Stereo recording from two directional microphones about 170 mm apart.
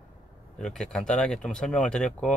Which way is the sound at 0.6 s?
5° left (ahead or behind).